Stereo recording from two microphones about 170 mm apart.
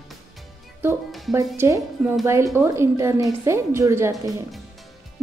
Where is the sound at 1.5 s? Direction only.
15° right (ahead or behind).